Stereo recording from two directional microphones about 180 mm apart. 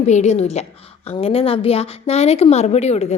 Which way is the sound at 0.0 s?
40° left (ahead or behind).